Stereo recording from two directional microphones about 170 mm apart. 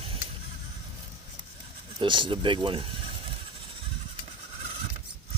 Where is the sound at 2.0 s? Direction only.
30° right (ahead or behind).